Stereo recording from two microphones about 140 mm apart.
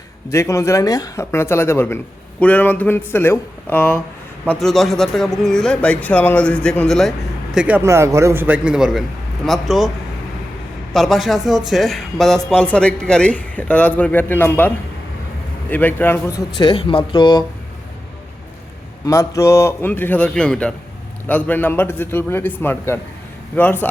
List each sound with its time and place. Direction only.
0.3 s speech: 20° left (ahead or behind)
4.4 s a man's voice: 5° left (ahead or behind)
7.5 s speech: 10° right (ahead or behind)
7.8 s a man's voice: 20° right (ahead or behind); by 9.9 s centre (ahead or behind)
10.9 s speech: centre (ahead or behind)
15.7 s speech: 15° left (ahead or behind)
16.6 s speech: 35° left (ahead or behind)
19.0 s speech: 20° left (ahead or behind)